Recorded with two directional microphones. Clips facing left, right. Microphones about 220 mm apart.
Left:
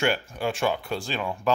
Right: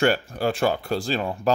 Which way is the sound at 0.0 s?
40° right (ahead or behind).